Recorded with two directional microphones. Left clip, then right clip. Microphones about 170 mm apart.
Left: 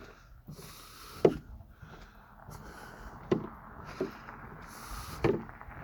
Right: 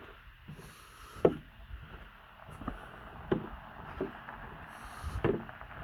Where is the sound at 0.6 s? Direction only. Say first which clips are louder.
Left 4 dB; 10° left (ahead or behind).